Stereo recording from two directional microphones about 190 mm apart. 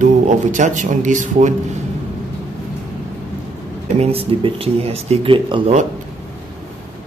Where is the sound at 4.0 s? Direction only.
30° right (ahead or behind).